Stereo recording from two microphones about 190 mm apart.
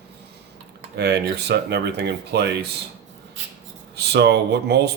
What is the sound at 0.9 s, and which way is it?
Speech, 60° right (ahead or behind).